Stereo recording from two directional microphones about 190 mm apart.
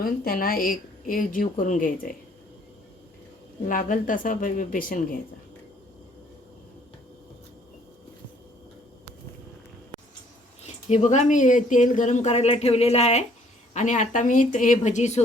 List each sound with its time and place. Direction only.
0.0 s a woman's voice: 50° left (ahead or behind)
3.7 s a woman's voice: 45° left (ahead or behind)
10.8 s speech: 40° left (ahead or behind)